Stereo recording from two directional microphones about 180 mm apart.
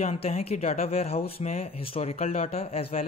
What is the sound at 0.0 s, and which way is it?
Speech, 35° left (ahead or behind).